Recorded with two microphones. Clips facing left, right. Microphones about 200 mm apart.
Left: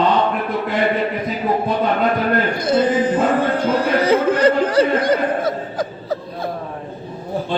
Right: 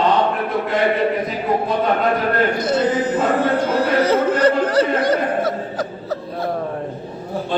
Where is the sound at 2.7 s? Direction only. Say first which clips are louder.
Left 2 dB; 10° left (ahead or behind).